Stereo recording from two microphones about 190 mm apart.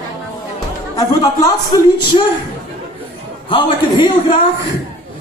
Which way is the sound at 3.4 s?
25° left (ahead or behind).